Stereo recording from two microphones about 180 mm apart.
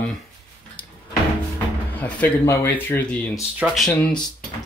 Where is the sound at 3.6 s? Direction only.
5° right (ahead or behind).